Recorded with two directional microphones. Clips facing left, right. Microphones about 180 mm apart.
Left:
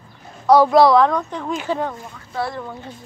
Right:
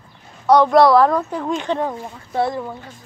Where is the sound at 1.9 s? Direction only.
20° right (ahead or behind).